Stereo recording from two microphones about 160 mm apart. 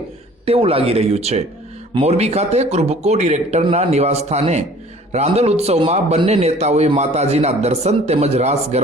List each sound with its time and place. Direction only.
0.4 s a man's voice: 35° right (ahead or behind)